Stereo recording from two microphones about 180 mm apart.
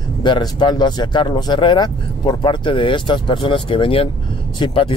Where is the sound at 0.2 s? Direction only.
25° left (ahead or behind).